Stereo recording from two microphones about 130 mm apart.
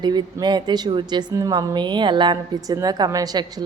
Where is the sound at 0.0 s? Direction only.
35° right (ahead or behind).